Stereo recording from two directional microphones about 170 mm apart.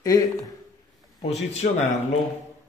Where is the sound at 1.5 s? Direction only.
40° left (ahead or behind).